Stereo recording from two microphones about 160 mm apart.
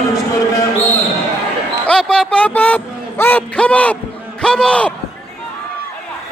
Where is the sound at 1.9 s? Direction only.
5° left (ahead or behind).